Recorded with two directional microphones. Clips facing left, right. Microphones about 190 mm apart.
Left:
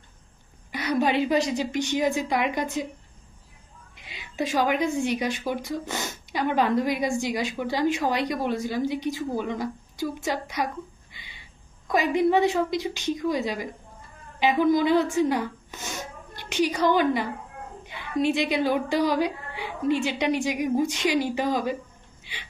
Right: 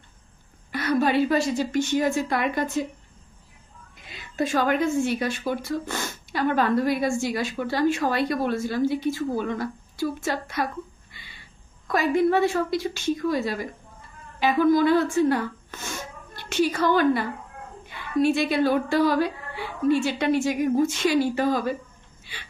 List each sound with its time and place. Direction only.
0.7 s speech: 15° left (ahead or behind)
4.2 s speech: 15° left (ahead or behind)